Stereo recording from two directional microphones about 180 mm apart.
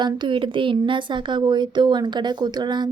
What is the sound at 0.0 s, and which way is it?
Speech, 25° right (ahead or behind).